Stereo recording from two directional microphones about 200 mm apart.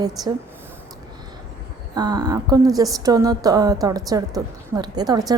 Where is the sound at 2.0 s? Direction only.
20° right (ahead or behind).